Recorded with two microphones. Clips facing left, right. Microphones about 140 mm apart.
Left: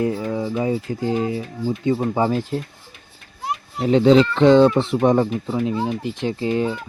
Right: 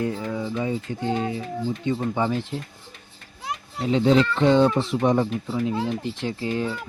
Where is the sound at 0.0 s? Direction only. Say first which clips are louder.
Left 5 dB; 30° left (ahead or behind).